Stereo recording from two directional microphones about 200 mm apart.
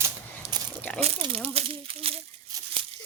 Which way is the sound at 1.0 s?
30° right (ahead or behind).